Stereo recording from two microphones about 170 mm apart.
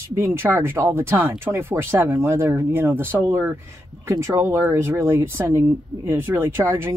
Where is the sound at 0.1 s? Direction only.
15° right (ahead or behind).